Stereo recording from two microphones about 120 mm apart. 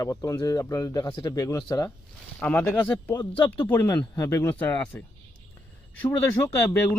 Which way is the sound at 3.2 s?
40° left (ahead or behind).